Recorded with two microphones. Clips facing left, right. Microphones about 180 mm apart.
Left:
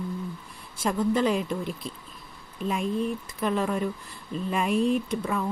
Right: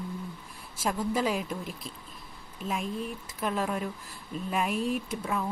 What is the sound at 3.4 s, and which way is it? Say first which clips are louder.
Speech: left 4 dB; 5° right (ahead or behind).